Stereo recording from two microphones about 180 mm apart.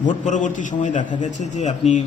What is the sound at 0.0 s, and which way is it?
A man's voice, 45° left (ahead or behind).